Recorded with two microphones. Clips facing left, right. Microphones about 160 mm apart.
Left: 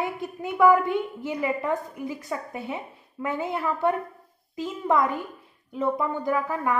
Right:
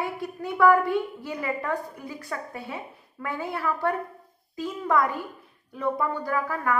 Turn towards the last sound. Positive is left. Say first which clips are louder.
# left 2 dB
turn(degrees=20)  # may be behind; listen again after turning